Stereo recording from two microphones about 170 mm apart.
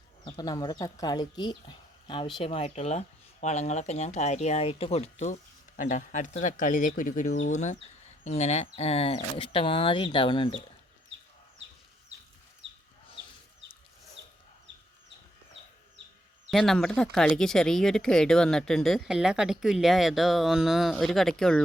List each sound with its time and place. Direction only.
0.3 s speech: 25° left (ahead or behind)
12.6 s chicken: 90° right
16.5 s speech: centre (ahead or behind)